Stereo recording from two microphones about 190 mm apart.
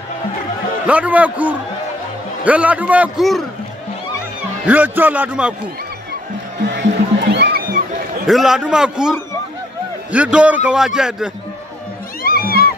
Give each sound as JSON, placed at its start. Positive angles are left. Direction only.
{"t": 0.8, "sound": "a man's voice", "side_deg": -5}
{"t": 4.6, "sound": "a man's voice", "side_deg": -10}
{"t": 6.6, "sound": "music", "side_deg": -65}
{"t": 8.3, "sound": "a man's voice", "side_deg": 0}
{"t": 12.2, "sound": "music", "side_deg": 50}